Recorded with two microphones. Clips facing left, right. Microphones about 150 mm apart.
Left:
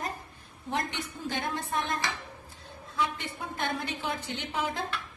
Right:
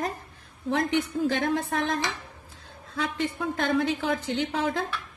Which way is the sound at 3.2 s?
90° right.